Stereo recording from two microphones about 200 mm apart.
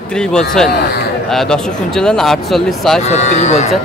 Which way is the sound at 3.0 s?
35° left (ahead or behind).